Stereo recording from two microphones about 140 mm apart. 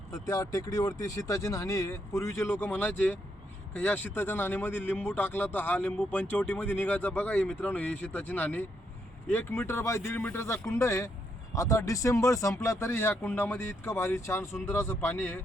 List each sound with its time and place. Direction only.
0.1 s speech: 25° left (ahead or behind)